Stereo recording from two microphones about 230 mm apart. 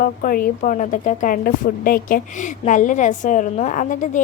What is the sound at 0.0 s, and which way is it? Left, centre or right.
Speech, left.